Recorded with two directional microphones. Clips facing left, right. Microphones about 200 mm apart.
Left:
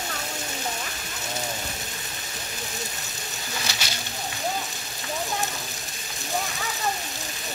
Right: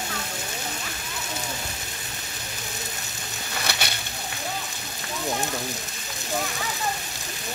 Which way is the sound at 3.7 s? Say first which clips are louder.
Right 6 dB; 60° right (ahead or behind).